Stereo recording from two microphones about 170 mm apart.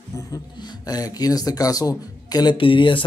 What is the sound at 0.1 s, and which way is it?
Speech, 20° left (ahead or behind).